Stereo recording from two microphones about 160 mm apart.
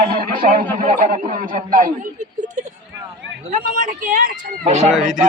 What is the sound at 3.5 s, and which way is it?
Speech, 60° right (ahead or behind).